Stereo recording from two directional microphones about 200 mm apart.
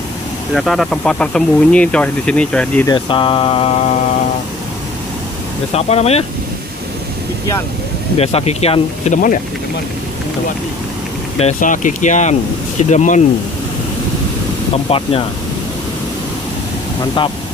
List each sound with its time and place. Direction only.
0.6 s speech: centre (ahead or behind)
2.9 s mantra: 25° left (ahead or behind)
5.7 s speech: 30° left (ahead or behind)
8.2 s speech: 30° left (ahead or behind)
11.3 s speech: 35° left (ahead or behind)
14.9 s mantra: 25° left (ahead or behind)